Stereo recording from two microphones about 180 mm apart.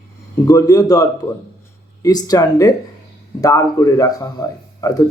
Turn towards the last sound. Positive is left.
turn(degrees=20)  # may be behind; listen again after turning